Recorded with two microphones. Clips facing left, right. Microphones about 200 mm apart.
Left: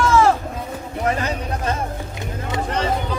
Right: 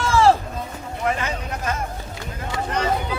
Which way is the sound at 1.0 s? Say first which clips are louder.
Left 2 dB; 40° left (ahead or behind).